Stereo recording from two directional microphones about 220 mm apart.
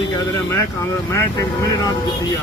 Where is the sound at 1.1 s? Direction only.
15° left (ahead or behind).